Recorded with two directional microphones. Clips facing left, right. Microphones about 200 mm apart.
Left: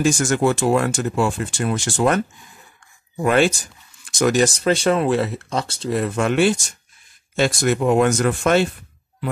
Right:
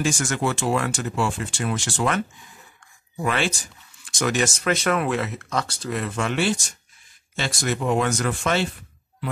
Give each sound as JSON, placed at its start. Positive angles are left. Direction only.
{"t": 0.0, "sound": "speech", "side_deg": 45}
{"t": 6.0, "sound": "speech", "side_deg": 45}